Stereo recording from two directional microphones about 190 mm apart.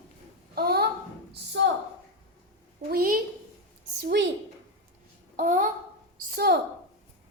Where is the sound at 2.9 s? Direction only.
50° right (ahead or behind).